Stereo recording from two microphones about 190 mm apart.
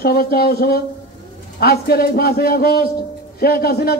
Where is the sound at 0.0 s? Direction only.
55° left (ahead or behind).